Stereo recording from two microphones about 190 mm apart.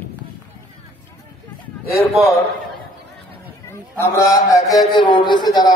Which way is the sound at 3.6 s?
15° left (ahead or behind).